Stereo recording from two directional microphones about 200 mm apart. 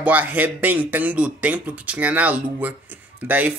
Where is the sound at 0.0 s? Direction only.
10° right (ahead or behind).